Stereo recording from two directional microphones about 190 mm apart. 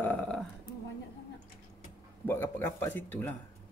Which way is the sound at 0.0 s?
10° left (ahead or behind).